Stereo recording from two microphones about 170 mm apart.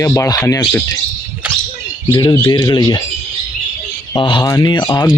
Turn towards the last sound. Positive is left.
turn(degrees=25)  # may be behind; listen again after turning